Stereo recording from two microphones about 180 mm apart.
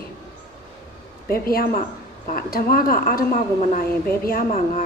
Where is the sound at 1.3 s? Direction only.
55° left (ahead or behind).